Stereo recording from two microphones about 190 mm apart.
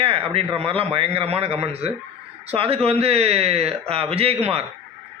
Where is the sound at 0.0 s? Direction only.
30° right (ahead or behind).